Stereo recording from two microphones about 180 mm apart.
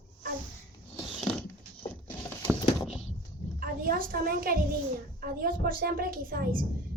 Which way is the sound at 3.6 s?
55° right (ahead or behind).